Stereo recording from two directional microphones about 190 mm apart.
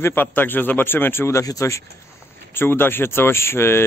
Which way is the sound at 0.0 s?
10° left (ahead or behind).